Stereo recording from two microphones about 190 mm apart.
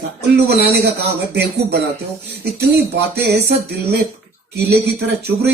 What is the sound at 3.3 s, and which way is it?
Speech, 60° right (ahead or behind).